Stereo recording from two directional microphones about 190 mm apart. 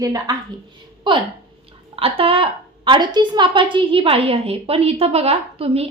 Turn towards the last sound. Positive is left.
turn(degrees=-30)  # may be behind; listen again after turning